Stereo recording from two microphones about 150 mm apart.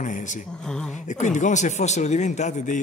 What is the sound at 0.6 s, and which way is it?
Speech, 5° left (ahead or behind).